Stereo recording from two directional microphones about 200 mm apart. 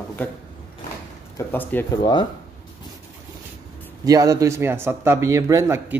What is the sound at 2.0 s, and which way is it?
Speech, 20° left (ahead or behind).